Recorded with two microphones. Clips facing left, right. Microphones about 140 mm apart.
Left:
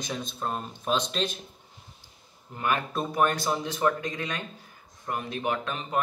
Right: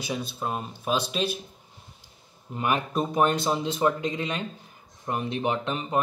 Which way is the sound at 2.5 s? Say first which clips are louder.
Right 2 dB; 15° right (ahead or behind).